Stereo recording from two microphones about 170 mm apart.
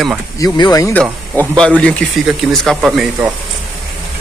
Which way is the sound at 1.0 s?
20° right (ahead or behind).